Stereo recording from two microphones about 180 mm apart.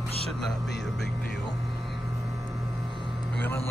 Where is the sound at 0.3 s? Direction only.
Centre (ahead or behind).